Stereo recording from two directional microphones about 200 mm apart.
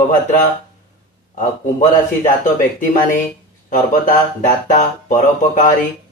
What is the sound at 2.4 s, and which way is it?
Speech, 40° left (ahead or behind).